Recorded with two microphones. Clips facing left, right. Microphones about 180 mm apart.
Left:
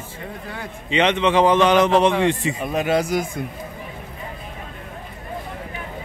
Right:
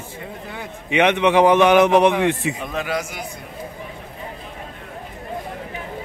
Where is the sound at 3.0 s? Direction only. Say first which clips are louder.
Left 7 dB; 35° left (ahead or behind).